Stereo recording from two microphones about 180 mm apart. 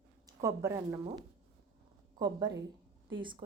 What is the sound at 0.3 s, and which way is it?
Speech, 15° right (ahead or behind).